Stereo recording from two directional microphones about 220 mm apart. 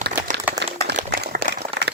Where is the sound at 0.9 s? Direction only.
40° right (ahead or behind).